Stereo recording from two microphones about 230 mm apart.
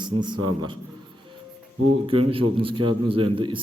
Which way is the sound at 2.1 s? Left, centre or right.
Right.